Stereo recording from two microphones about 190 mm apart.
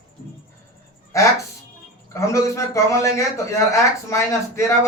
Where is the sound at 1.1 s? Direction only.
15° left (ahead or behind).